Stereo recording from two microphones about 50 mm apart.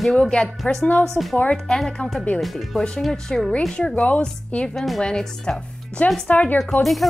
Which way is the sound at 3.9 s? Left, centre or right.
Left.